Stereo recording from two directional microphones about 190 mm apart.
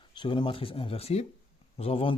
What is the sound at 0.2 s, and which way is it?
Speech, 25° left (ahead or behind).